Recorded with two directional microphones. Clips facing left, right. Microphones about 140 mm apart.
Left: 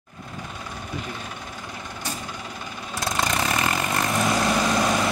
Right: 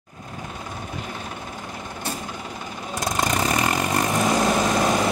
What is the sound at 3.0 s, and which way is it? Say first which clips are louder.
Vehicle: right 2 dB; 45° right (ahead or behind).